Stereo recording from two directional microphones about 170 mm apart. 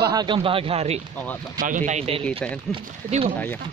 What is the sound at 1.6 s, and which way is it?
Speech, 50° right (ahead or behind).